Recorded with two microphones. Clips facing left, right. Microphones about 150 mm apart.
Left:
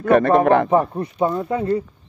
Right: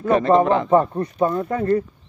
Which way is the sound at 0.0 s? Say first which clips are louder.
Left 1 dB; 60° left (ahead or behind).